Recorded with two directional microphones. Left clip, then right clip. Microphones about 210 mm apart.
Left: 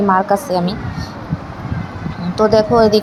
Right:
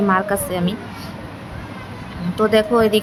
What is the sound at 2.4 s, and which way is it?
Speech, 20° right (ahead or behind).